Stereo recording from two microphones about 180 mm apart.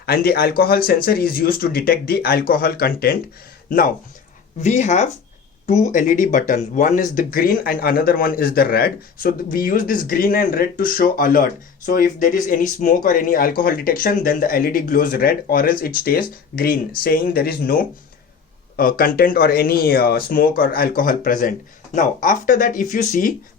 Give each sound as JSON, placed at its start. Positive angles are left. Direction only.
{"t": 0.0, "sound": "speech", "side_deg": 60}
{"t": 4.6, "sound": "speech", "side_deg": 40}